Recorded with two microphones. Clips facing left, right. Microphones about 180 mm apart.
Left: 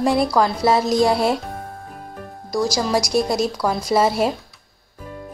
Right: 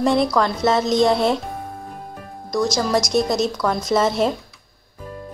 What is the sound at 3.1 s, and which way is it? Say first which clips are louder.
A woman's voice: even; 10° left (ahead or behind).